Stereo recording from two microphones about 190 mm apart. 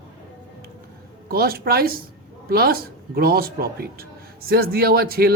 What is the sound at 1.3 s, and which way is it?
Speech, 55° right (ahead or behind).